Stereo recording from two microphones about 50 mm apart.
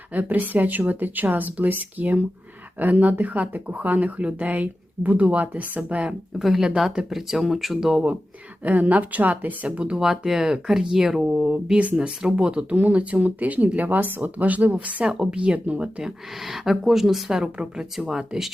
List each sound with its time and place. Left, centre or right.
0.1 s speech: right
6.4 s a woman's voice: centre
8.6 s speech: right
10.0 s a woman's voice: centre
11.8 s speech: right
15.0 s a woman's voice: centre
15.4 s speech: right
16.0 s a woman's voice: centre